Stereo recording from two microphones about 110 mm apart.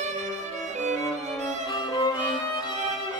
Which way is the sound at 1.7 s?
40° left (ahead or behind).